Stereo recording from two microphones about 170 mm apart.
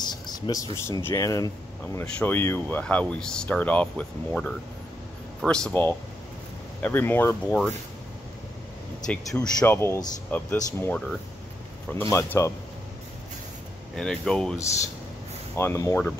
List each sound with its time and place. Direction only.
0.0 s speech: 25° left (ahead or behind)
9.0 s speech: 5° left (ahead or behind)
9.7 s speech: 15° left (ahead or behind)
13.9 s speech: 5° left (ahead or behind)
15.5 s speech: 15° left (ahead or behind)